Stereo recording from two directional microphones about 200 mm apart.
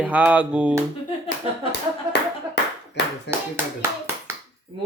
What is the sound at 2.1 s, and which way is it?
Clapping, 60° left (ahead or behind).